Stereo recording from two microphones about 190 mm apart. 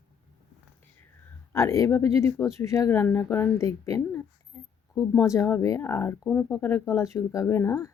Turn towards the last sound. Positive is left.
turn(degrees=15)  # may be behind; listen again after turning